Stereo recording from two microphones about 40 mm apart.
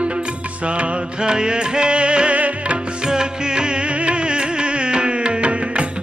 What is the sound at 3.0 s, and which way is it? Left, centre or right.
Music, centre.